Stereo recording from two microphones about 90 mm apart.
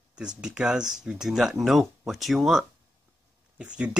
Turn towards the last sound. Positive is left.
turn(degrees=-15)  # may be behind; listen again after turning